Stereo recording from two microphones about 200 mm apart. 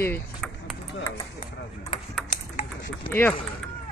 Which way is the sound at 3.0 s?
10° left (ahead or behind).